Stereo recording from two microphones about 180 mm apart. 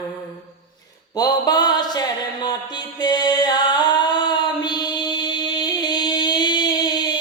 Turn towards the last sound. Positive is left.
turn(degrees=20)  # may be behind; listen again after turning